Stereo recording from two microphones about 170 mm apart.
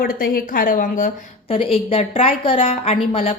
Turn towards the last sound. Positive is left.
turn(degrees=35)  # may be behind; listen again after turning